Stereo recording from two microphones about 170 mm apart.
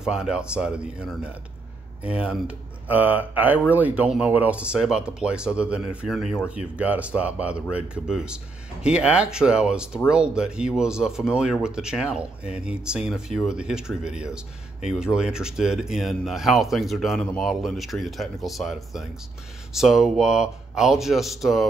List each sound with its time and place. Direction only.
0.0 s speech: 5° right (ahead or behind)